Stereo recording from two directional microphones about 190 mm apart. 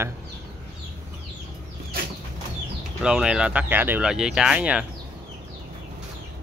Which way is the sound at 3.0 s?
5° right (ahead or behind).